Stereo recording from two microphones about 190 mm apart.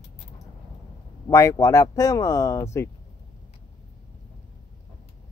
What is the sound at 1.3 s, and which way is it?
Speech, 15° left (ahead or behind).